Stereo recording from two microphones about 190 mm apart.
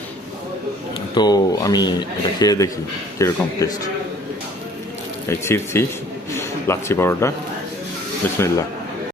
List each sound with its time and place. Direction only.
1.1 s a man's voice: 20° left (ahead or behind)
5.3 s a man's voice: 15° left (ahead or behind)
8.4 s a man's voice: 15° left (ahead or behind)